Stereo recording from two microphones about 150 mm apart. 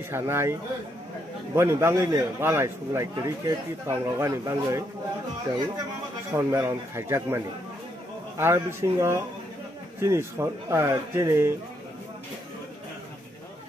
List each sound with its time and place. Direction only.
0.1 s a man's voice: 15° right (ahead or behind)
6.3 s a man's voice: 20° right (ahead or behind)